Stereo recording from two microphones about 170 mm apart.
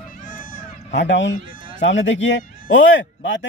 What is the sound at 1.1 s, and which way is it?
A man's voice, 90° left.